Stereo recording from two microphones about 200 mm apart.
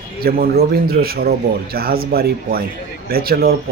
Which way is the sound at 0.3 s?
50° right (ahead or behind).